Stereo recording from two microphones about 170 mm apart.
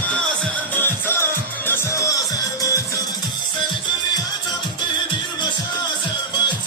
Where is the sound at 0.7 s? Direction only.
10° left (ahead or behind).